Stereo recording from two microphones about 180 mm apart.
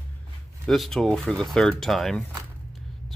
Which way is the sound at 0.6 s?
Centre (ahead or behind).